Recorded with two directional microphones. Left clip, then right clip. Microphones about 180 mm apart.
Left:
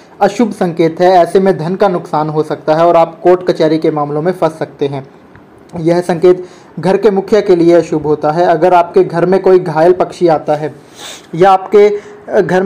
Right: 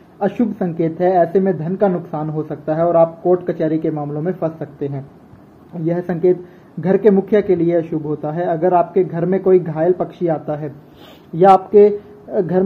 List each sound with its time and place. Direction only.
0.2 s speech: 20° left (ahead or behind)
11.7 s speech: 10° left (ahead or behind)